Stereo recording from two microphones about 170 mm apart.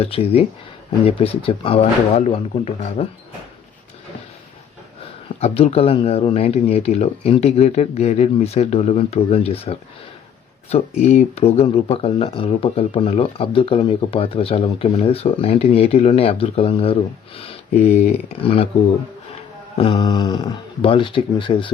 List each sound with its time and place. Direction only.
0.0 s speech: 35° left (ahead or behind)
5.4 s speech: 35° left (ahead or behind)
19.7 s speech: 30° left (ahead or behind)